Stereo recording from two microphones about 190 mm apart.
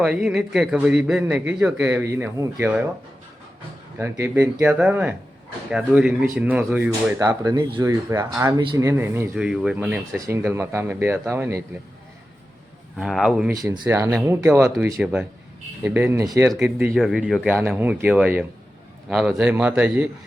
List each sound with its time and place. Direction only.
0.0 s speech: 5° right (ahead or behind)
3.9 s speech: 10° right (ahead or behind)
13.0 s speech: 5° right (ahead or behind)
13.5 s speech: 20° right (ahead or behind)